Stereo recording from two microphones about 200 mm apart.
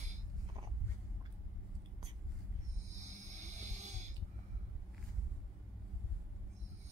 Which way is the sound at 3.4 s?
35° right (ahead or behind).